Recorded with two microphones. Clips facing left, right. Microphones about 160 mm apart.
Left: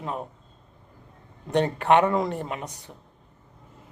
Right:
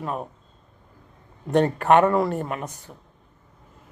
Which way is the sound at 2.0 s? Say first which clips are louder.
Right 3 dB; 55° right (ahead or behind).